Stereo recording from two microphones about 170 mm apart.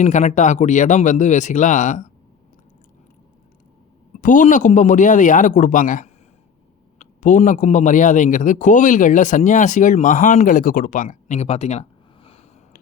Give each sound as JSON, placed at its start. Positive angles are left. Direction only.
{"t": 0.0, "sound": "speech", "side_deg": 45}
{"t": 4.2, "sound": "speech", "side_deg": 50}